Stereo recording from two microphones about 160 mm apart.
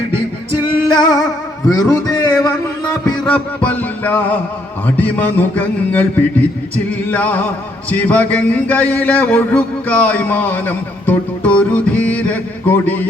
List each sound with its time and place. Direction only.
0.5 s music: 25° left (ahead or behind)
1.7 s a man's voice: 20° left (ahead or behind)
2.4 s a sound: 25° left (ahead or behind)
3.2 s music: 10° left (ahead or behind)